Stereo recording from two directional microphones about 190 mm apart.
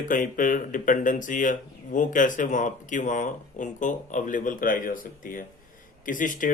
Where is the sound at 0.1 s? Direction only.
45° left (ahead or behind).